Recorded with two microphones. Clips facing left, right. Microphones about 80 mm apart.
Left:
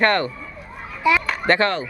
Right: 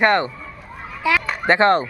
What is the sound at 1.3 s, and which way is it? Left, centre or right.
Children playing, centre.